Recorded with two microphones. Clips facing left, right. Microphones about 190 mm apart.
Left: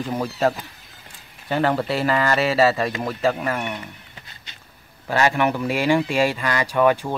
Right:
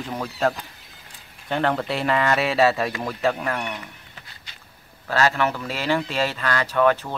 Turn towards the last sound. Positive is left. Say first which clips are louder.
# left 1 dB
turn(degrees=10)  # may be behind; listen again after turning